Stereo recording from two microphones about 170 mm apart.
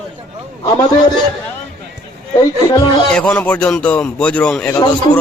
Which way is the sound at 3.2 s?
5° left (ahead or behind).